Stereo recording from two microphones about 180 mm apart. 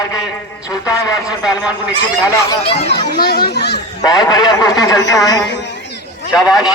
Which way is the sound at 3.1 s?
60° left (ahead or behind).